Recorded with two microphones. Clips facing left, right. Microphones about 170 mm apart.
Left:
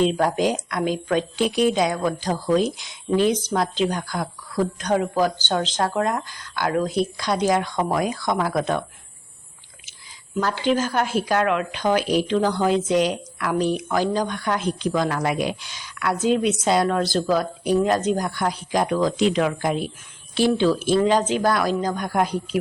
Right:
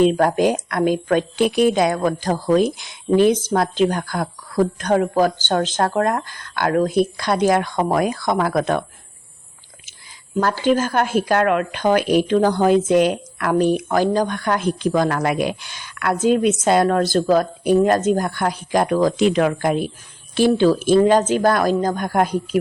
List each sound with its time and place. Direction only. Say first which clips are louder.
0.0 s a woman's voice: right 4 dB; 50° right (ahead or behind)
10.6 s a woman's voice: right 3 dB; 50° right (ahead or behind)